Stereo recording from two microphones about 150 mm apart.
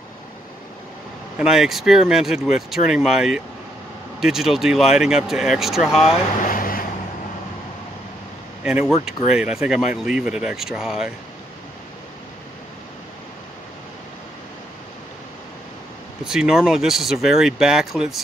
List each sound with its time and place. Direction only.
1.4 s speech: 5° right (ahead or behind)
6.4 s vehicle: 65° left (ahead or behind)
8.6 s speech: 5° right (ahead or behind)
16.3 s speech: 5° right (ahead or behind)